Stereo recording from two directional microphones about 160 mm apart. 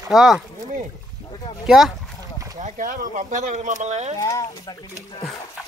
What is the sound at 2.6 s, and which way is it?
Speech, 55° right (ahead or behind).